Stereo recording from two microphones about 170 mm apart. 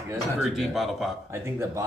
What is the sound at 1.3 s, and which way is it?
Speech, 15° right (ahead or behind).